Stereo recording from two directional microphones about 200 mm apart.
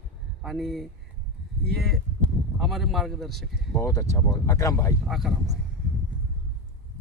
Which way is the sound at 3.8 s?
15° left (ahead or behind).